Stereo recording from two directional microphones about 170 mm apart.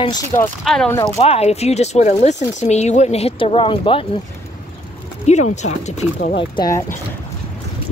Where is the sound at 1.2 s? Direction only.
35° left (ahead or behind).